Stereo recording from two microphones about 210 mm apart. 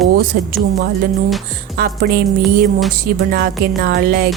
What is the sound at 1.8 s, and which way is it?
Speech, 45° right (ahead or behind).